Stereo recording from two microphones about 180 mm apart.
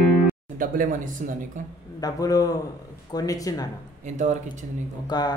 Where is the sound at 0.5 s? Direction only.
50° right (ahead or behind).